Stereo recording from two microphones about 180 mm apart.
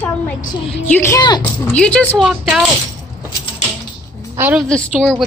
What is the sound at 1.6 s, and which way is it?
A woman's voice, 5° left (ahead or behind).